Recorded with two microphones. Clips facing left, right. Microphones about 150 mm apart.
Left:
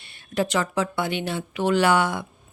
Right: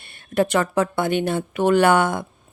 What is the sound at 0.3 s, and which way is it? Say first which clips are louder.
Mantra: right 4 dB; 55° right (ahead or behind).